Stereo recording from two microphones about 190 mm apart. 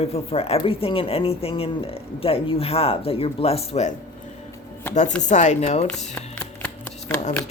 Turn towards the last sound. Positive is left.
turn(degrees=5)  # may be behind; listen again after turning